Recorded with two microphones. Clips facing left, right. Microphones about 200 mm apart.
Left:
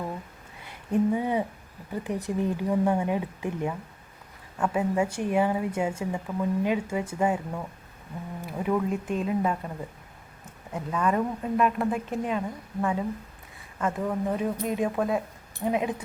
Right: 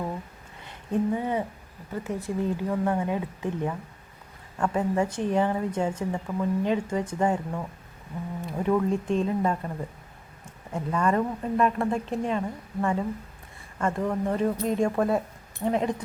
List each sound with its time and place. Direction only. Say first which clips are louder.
0.7 s a woman's voice: left 2 dB; 10° left (ahead or behind)